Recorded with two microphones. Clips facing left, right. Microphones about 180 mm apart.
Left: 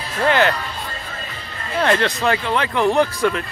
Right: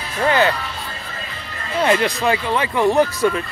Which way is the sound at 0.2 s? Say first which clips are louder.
Even; 15° right (ahead or behind).